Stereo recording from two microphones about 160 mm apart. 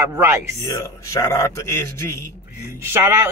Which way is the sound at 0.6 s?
20° left (ahead or behind).